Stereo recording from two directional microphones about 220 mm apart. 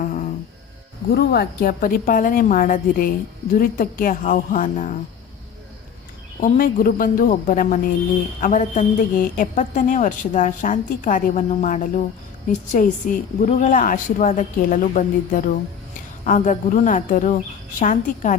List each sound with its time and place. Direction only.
0.0 s music: 35° left (ahead or behind)
1.1 s a woman's voice: 45° left (ahead or behind)
6.4 s a woman's voice: 40° left (ahead or behind)